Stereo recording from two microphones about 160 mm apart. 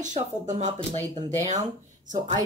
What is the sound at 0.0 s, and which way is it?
Speech, 50° right (ahead or behind).